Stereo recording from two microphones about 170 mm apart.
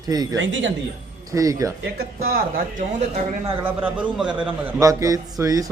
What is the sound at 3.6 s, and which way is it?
A man's voice, 10° right (ahead or behind).